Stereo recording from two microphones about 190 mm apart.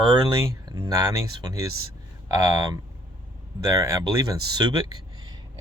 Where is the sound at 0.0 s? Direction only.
25° right (ahead or behind).